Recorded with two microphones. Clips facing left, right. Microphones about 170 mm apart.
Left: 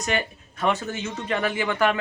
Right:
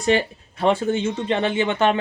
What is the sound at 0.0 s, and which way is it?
Speech, 30° right (ahead or behind).